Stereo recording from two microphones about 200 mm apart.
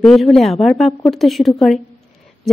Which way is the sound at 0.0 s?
Centre (ahead or behind).